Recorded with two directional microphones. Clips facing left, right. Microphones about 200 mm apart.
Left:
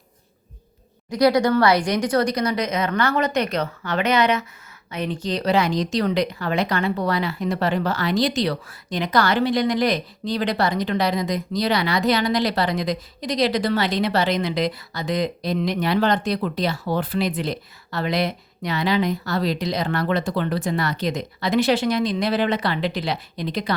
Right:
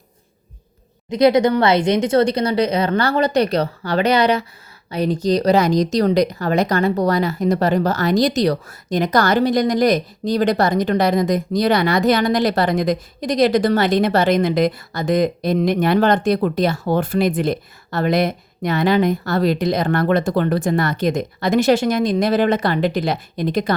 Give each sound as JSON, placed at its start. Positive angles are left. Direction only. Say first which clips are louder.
{"t": 1.1, "sound": "a woman's voice", "louder": "right 3 dB", "side_deg": -20}